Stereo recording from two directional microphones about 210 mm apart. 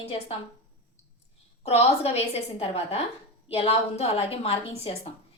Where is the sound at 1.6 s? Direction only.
30° left (ahead or behind).